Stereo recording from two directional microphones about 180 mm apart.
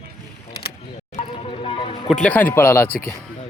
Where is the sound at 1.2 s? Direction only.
30° left (ahead or behind).